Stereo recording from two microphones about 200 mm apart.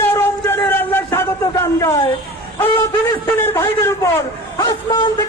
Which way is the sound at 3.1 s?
15° left (ahead or behind).